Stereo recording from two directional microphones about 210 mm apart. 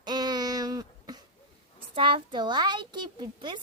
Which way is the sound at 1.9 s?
25° right (ahead or behind).